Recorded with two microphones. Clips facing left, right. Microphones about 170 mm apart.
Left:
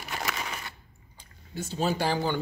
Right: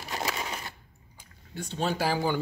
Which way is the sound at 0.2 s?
30° right (ahead or behind).